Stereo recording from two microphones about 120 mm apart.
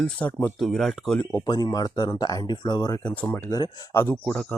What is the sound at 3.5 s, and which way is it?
Speech, 35° left (ahead or behind).